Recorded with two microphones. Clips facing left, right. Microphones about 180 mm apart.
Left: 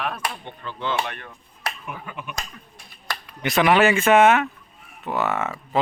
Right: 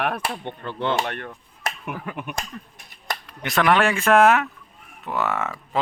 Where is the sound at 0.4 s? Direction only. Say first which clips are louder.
Right 4 dB; 60° right (ahead or behind).